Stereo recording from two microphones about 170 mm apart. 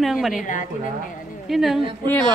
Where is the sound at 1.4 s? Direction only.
Centre (ahead or behind).